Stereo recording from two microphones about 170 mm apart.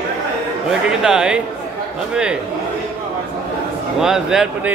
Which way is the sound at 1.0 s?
5° right (ahead or behind).